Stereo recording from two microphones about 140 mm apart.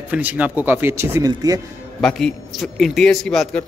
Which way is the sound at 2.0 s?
5° left (ahead or behind).